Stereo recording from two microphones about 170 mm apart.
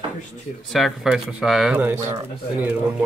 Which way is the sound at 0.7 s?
Centre (ahead or behind).